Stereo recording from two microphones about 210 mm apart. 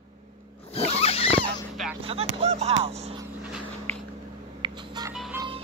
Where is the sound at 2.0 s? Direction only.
25° right (ahead or behind).